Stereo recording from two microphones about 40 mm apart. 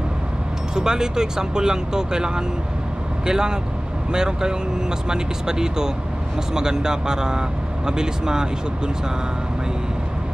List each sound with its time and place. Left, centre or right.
0.7 s speech: centre